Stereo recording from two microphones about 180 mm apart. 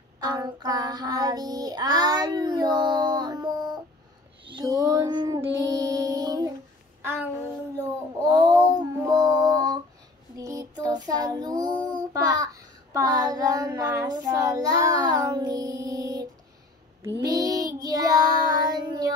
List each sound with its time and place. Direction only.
0.2 s child singing: 20° right (ahead or behind)
5.6 s music: 20° right (ahead or behind)
8.3 s female singing: 20° right (ahead or behind)
10.3 s child singing: 20° right (ahead or behind)